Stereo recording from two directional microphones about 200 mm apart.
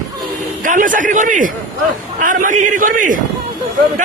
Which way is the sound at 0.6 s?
40° right (ahead or behind).